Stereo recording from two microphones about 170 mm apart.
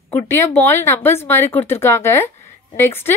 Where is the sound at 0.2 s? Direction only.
15° left (ahead or behind).